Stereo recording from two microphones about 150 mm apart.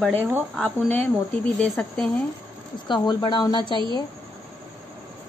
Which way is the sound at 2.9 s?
30° left (ahead or behind).